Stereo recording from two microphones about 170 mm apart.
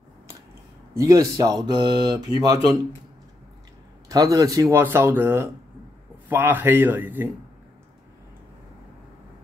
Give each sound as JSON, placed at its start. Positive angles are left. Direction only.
{"t": 0.9, "sound": "speech", "side_deg": -20}
{"t": 4.1, "sound": "speech", "side_deg": -20}